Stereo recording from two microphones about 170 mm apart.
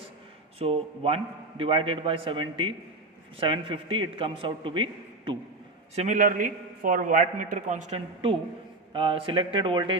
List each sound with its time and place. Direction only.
0.6 s a man's voice: 35° right (ahead or behind)
6.1 s a man's voice: 55° right (ahead or behind); by 10.0 s 30° right (ahead or behind)